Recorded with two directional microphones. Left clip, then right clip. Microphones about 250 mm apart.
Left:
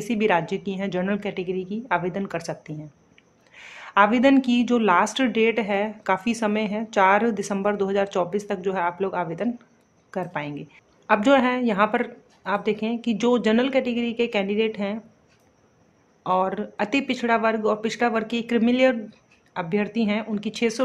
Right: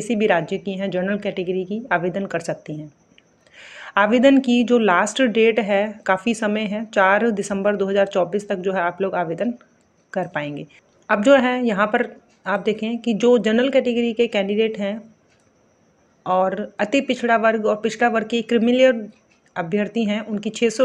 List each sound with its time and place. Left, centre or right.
0.0 s a man's voice: centre
16.2 s a man's voice: centre